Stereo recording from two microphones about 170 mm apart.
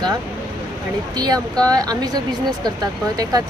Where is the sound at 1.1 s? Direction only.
25° right (ahead or behind).